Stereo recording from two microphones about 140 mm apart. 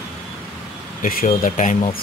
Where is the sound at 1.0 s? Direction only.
85° left; by 2.0 s 65° left (ahead or behind).